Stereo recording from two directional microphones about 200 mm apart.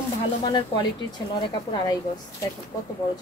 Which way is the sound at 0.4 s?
20° left (ahead or behind).